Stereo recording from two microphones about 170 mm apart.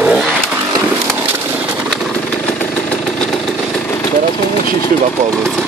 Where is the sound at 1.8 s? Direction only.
Centre (ahead or behind).